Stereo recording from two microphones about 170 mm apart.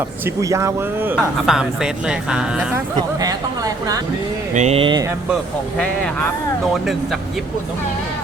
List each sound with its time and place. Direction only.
0.4 s speech: 15° right (ahead or behind)
1.5 s speech: 5° right (ahead or behind)
2.9 s speech: 20° right (ahead or behind)
4.5 s speech: 40° right (ahead or behind)